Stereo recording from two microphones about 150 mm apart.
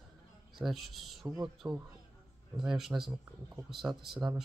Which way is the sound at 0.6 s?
Centre (ahead or behind).